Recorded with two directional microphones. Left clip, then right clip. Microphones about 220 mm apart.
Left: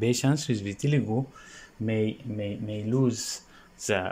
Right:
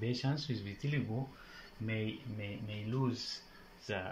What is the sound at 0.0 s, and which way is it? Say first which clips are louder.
Speech: left 12 dB; 55° left (ahead or behind).